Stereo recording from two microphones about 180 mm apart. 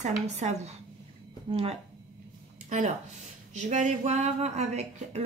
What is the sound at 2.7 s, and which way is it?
Speech, 40° right (ahead or behind).